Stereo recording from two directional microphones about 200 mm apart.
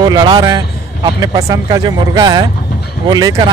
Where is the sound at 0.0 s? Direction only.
20° right (ahead or behind).